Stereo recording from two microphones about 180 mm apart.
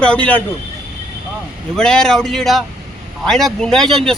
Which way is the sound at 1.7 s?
5° left (ahead or behind).